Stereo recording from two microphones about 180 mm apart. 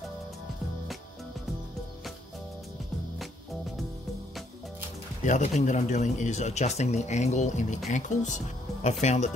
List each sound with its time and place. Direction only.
5.2 s speech: 45° left (ahead or behind)